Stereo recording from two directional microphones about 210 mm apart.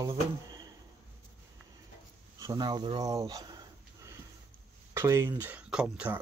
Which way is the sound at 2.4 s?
20° right (ahead or behind).